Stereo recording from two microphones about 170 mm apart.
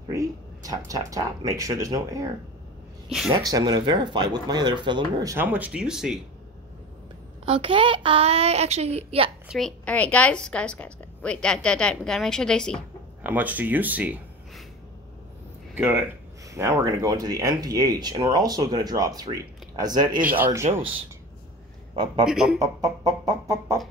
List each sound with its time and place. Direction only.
0.1 s speech: 20° right (ahead or behind)
3.1 s speech: 5° right (ahead or behind)
3.4 s speech: 20° right (ahead or behind)
5.3 s a woman's voice: 10° right (ahead or behind)
7.4 s a woman's voice: 30° right (ahead or behind)
9.5 s a woman's voice: centre (ahead or behind)
13.2 s speech: 10° right (ahead or behind)
15.7 s speech: 10° right (ahead or behind)
20.3 s speech: 15° right (ahead or behind)
21.9 s a man's voice: 25° right (ahead or behind)
22.2 s a woman's voice: centre (ahead or behind)
22.6 s speech: 20° right (ahead or behind)